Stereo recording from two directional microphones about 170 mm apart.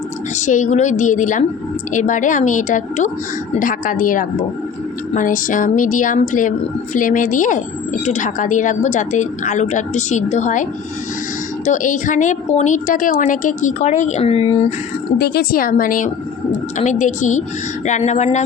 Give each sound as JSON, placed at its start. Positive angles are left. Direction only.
{"t": 0.3, "sound": "a woman's voice", "side_deg": 45}
{"t": 15.2, "sound": "a woman's voice", "side_deg": 65}